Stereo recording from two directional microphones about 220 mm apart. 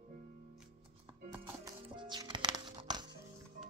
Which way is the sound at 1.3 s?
20° right (ahead or behind).